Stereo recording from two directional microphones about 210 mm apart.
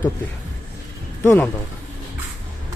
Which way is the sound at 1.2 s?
15° left (ahead or behind).